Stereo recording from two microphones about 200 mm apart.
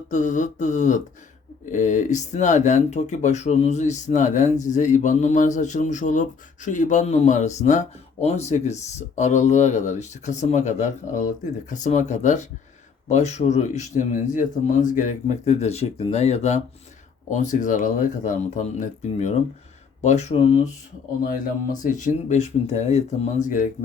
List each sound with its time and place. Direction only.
0.1 s speech: 40° left (ahead or behind)
21.2 s speech: 40° left (ahead or behind)